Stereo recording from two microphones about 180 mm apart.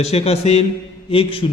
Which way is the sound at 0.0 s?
35° left (ahead or behind).